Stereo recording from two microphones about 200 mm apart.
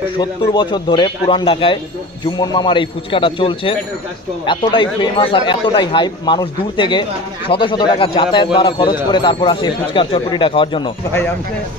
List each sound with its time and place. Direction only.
0.2 s speech: 20° left (ahead or behind)